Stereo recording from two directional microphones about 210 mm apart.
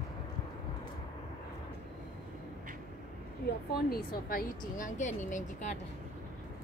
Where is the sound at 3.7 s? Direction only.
45° left (ahead or behind).